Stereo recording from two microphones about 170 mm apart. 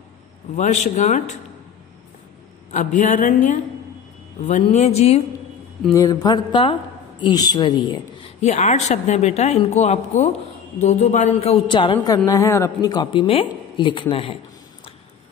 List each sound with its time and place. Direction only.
0.6 s speech: 45° left (ahead or behind)
2.7 s a man's voice: 45° left (ahead or behind)
5.9 s speech: 25° left (ahead or behind)
8.4 s a man's voice: 45° left (ahead or behind)